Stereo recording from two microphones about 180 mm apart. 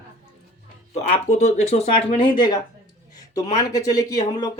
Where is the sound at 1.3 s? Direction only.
40° left (ahead or behind).